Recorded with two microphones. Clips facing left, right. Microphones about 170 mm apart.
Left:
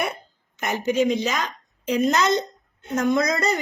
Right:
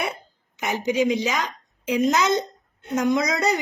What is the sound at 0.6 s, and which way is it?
A woman's voice, 15° right (ahead or behind).